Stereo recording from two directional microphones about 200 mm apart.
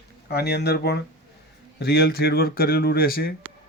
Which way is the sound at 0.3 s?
55° left (ahead or behind).